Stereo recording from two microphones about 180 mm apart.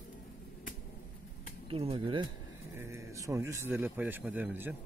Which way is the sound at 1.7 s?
30° right (ahead or behind).